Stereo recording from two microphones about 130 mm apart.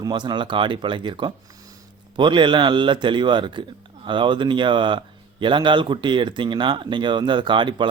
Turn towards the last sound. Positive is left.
turn(degrees=-40)  # may be behind; listen again after turning